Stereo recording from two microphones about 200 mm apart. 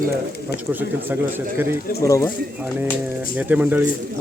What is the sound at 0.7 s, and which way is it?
Speech, 10° right (ahead or behind).